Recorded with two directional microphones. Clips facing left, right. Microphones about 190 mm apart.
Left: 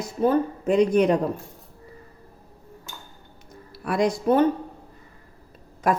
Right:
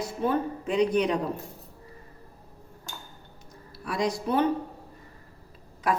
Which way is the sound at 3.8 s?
55° left (ahead or behind).